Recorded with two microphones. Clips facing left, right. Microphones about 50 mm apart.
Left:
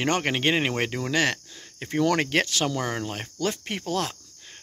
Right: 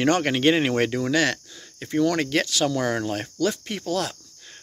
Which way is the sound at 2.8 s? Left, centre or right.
Centre.